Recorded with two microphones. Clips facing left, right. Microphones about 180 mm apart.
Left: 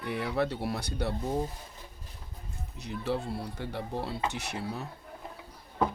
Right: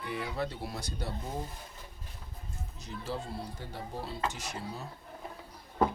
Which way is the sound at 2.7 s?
65° left (ahead or behind).